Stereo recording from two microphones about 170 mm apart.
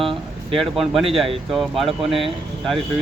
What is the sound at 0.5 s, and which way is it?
Speech, centre (ahead or behind).